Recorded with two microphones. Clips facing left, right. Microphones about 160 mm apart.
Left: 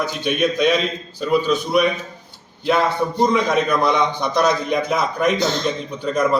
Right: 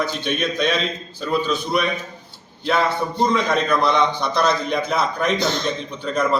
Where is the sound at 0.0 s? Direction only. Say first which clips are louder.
Left 3 dB; 15° left (ahead or behind).